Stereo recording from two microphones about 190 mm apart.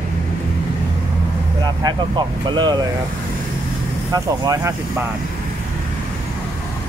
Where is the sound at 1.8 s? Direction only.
20° right (ahead or behind).